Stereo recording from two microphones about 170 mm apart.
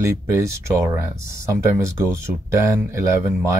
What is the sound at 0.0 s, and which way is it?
Speech, 15° right (ahead or behind).